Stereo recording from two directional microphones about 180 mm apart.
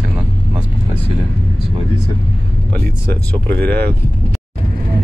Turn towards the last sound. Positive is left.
turn(degrees=-65)  # may be behind; listen again after turning